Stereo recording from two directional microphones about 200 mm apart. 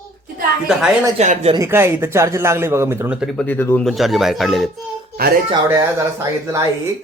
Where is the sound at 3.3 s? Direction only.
10° left (ahead or behind).